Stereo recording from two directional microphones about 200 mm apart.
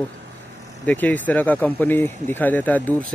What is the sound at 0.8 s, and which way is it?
Speech, 10° left (ahead or behind).